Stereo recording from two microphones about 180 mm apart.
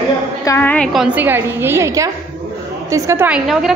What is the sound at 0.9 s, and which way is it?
Speech, 5° right (ahead or behind).